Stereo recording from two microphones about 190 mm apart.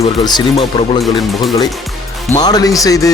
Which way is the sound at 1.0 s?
Centre (ahead or behind).